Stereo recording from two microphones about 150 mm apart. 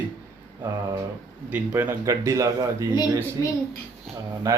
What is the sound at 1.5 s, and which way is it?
Speech, 15° right (ahead or behind).